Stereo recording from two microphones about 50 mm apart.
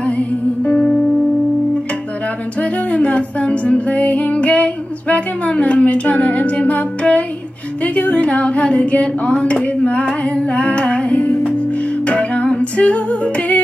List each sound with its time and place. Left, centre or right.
0.0 s music: left
2.6 s music: left
7.8 s a sound: left
10.2 s music: left